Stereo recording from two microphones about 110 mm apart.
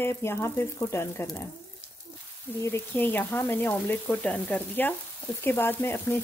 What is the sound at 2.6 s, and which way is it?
Speech, 20° left (ahead or behind).